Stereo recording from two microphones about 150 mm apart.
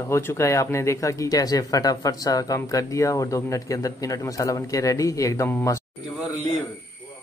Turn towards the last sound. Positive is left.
turn(degrees=20)  # may be behind; listen again after turning